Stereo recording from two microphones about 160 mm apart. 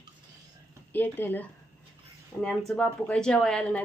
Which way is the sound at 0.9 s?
10° left (ahead or behind).